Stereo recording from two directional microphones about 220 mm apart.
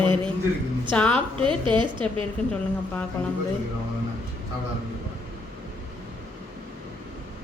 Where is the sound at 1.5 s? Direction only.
20° right (ahead or behind).